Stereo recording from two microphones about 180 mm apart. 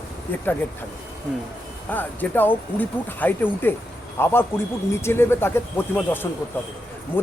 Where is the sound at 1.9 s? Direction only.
10° left (ahead or behind).